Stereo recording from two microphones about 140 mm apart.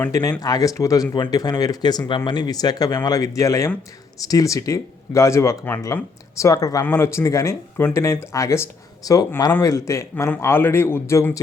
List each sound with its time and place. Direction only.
0.1 s a man's voice: 25° left (ahead or behind)